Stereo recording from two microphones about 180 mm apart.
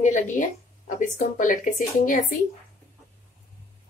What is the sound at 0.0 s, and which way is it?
Speech, 45° left (ahead or behind).